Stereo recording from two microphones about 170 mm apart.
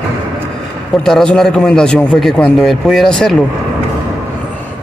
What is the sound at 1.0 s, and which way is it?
A man's voice, 5° left (ahead or behind).